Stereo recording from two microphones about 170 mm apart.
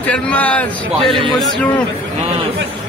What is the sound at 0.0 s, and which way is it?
A man's voice, 10° left (ahead or behind).